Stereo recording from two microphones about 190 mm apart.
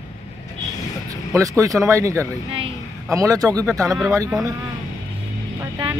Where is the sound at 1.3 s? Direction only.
15° right (ahead or behind).